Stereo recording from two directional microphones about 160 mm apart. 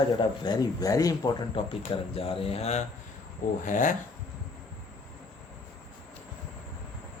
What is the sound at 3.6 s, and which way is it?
Speech, 55° left (ahead or behind).